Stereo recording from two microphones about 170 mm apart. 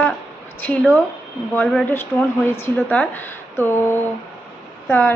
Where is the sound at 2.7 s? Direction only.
5° left (ahead or behind).